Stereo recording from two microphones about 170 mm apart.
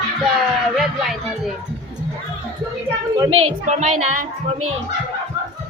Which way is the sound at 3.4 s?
45° right (ahead or behind).